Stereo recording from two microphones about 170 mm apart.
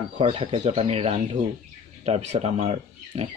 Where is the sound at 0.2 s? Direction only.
35° right (ahead or behind).